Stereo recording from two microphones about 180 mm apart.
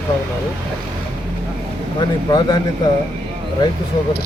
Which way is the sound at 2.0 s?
25° left (ahead or behind).